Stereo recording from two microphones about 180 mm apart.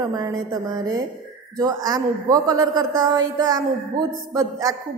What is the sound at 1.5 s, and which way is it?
A woman's voice, 20° right (ahead or behind).